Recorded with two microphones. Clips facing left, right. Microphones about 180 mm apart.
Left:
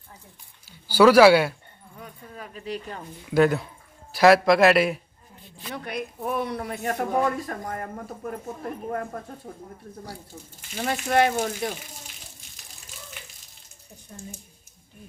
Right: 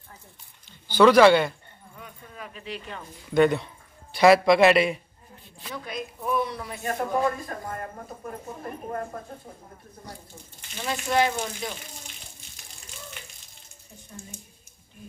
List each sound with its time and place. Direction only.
0.7 s speech: 5° left (ahead or behind)
2.0 s a sound: 40° left (ahead or behind)
3.3 s speech: 5° left (ahead or behind)
5.8 s a woman's voice: 60° left (ahead or behind)
7.6 s speech: 45° left (ahead or behind)
10.8 s speech: 55° left (ahead or behind)